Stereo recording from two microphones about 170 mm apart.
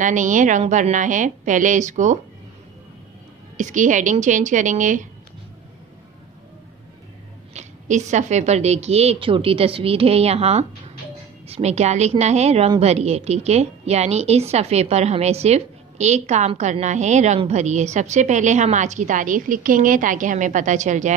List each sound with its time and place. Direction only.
0.0 s a woman's voice: 50° right (ahead or behind)
3.5 s a woman's voice: 50° right (ahead or behind)
7.5 s a woman's voice: 45° right (ahead or behind)